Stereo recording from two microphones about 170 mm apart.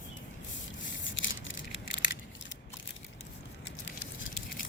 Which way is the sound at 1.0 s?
90° left.